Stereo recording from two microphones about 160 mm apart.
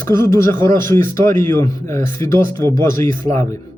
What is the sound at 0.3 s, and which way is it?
A man's voice, 20° left (ahead or behind).